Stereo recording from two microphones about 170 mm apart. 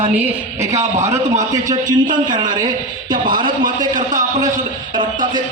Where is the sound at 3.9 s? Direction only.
50° right (ahead or behind).